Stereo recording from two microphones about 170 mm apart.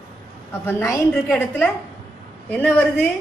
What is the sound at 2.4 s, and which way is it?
Speech, 10° left (ahead or behind).